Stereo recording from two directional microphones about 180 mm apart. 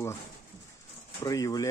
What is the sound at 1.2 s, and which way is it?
Speech, 20° left (ahead or behind).